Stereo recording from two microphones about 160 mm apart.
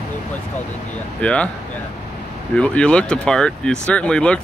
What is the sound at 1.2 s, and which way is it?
Speech, 10° left (ahead or behind).